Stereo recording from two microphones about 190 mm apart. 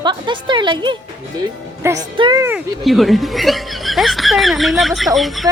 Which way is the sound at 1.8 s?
15° right (ahead or behind).